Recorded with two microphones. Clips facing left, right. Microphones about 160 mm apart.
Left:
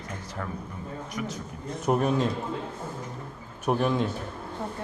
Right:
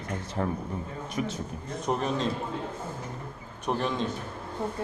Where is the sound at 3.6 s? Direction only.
10° left (ahead or behind).